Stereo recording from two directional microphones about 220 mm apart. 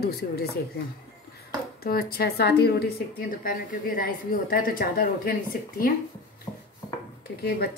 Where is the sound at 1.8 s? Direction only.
45° left (ahead or behind).